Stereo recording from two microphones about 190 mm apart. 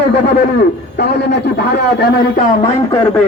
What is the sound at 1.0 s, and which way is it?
Speech, 60° left (ahead or behind).